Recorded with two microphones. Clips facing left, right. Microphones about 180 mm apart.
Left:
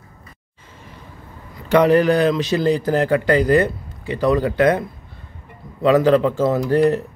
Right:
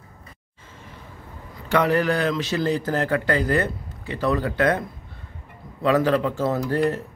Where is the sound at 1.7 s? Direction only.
20° left (ahead or behind).